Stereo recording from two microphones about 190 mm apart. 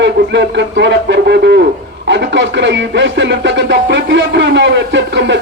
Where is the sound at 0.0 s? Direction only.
65° right (ahead or behind).